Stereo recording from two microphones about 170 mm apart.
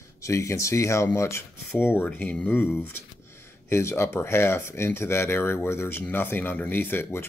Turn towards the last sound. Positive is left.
turn(degrees=15)  # may be behind; listen again after turning